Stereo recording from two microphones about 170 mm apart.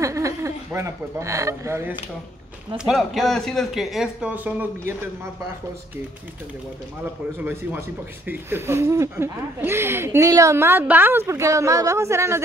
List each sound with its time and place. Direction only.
0.0 s speech: 15° right (ahead or behind)
2.8 s speech: centre (ahead or behind)
8.3 s speech: 15° right (ahead or behind)